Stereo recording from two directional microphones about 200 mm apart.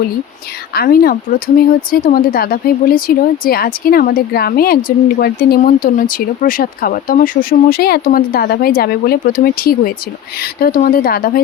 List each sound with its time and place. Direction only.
0.7 s speech: 50° left (ahead or behind)